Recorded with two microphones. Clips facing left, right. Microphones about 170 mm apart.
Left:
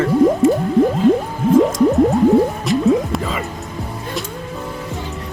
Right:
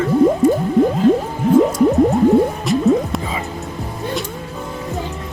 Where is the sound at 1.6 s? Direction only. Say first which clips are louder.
Even; centre (ahead or behind).